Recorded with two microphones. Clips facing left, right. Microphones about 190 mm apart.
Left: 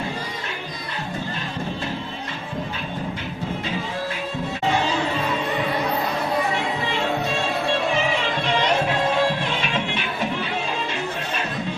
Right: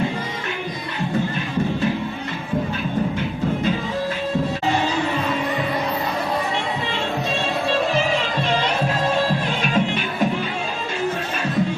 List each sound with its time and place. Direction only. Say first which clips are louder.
9.6 s music: right 5 dB; 45° right (ahead or behind)